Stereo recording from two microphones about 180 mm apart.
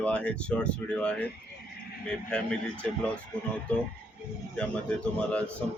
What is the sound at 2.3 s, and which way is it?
Speech, 5° left (ahead or behind).